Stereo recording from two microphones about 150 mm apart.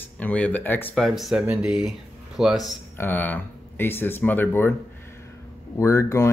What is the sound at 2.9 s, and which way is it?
Speech, 10° left (ahead or behind).